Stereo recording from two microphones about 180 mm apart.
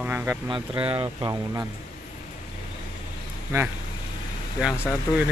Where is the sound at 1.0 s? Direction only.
20° right (ahead or behind).